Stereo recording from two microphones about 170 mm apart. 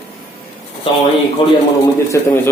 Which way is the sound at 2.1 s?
15° left (ahead or behind).